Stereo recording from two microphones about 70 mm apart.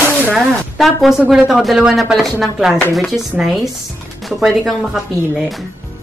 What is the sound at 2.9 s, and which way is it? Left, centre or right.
Speech, centre.